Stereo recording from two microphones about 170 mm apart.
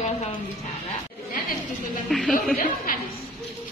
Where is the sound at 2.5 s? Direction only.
55° left (ahead or behind).